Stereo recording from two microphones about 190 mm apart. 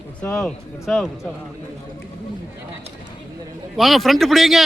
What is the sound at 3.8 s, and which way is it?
Speech, centre (ahead or behind).